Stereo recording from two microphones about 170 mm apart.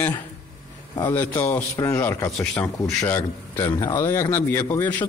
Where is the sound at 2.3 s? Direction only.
Centre (ahead or behind).